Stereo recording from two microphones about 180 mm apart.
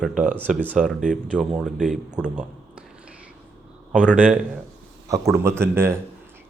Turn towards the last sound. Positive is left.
turn(degrees=-15)  # may be behind; listen again after turning